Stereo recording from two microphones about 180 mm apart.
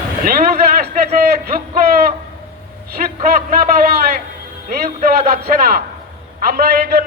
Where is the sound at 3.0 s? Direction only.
45° right (ahead or behind).